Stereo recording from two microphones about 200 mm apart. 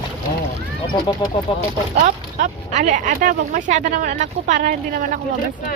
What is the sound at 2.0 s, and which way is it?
Speech, 40° right (ahead or behind).